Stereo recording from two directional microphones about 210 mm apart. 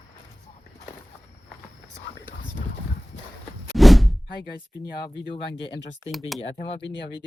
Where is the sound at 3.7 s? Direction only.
Centre (ahead or behind).